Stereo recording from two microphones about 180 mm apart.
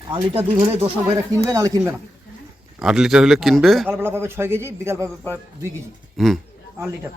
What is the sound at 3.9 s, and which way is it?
A man's voice, 10° right (ahead or behind).